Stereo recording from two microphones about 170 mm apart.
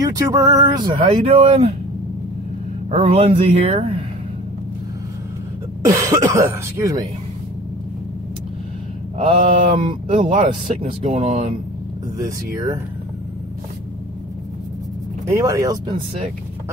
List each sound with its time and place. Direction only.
0.0 s speech: 20° right (ahead or behind)
1.0 s speech: 35° right (ahead or behind)
2.9 s speech: 35° right (ahead or behind)
5.9 s speech: 20° right (ahead or behind)
9.6 s speech: 30° right (ahead or behind)
10.0 s speech: 45° right (ahead or behind)
11.1 s speech: 35° right (ahead or behind)
12.2 s speech: 15° right (ahead or behind)
15.3 s speech: 20° right (ahead or behind)